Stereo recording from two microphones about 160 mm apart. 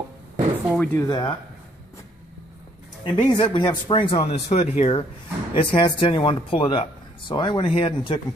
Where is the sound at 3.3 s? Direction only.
30° left (ahead or behind).